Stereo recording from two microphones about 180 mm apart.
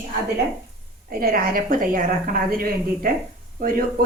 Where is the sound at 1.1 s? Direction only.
55° right (ahead or behind).